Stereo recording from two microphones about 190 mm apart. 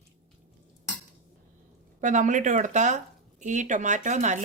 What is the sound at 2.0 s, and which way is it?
A woman's voice, 40° right (ahead or behind).